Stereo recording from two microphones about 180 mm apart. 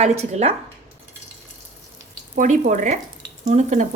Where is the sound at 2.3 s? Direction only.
45° right (ahead or behind).